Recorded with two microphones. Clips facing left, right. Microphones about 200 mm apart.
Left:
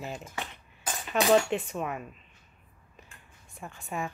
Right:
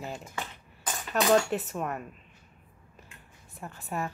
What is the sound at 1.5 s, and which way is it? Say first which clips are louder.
Speech: even; centre (ahead or behind).